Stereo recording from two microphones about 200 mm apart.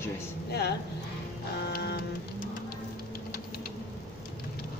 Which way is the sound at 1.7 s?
50° left (ahead or behind).